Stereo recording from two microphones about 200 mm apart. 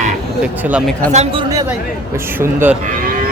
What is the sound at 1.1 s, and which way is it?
Speech, 30° right (ahead or behind).